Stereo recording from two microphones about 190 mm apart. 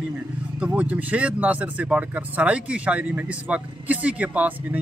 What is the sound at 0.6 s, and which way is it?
Speech, 10° right (ahead or behind).